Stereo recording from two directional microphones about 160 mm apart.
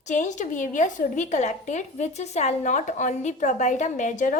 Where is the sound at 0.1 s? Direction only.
50° left (ahead or behind).